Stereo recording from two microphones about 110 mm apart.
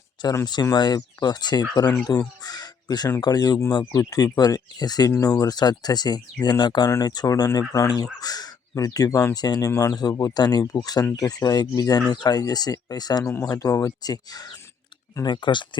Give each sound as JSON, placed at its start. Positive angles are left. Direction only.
{"t": 0.4, "sound": "speech", "side_deg": 40}
{"t": 2.0, "sound": "crow", "side_deg": 35}
{"t": 3.2, "sound": "speech", "side_deg": 35}